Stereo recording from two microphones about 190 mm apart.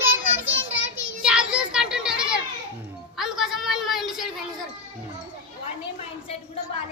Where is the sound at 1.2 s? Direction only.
5° right (ahead or behind).